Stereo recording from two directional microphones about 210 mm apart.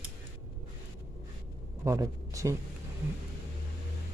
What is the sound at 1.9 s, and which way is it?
Speech, 15° right (ahead or behind).